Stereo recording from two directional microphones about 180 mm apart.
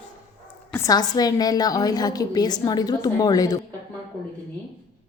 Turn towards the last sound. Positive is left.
turn(degrees=20)  # may be behind; listen again after turning